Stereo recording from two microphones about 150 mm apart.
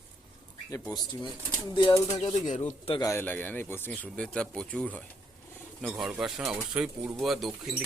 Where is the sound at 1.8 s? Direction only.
25° left (ahead or behind).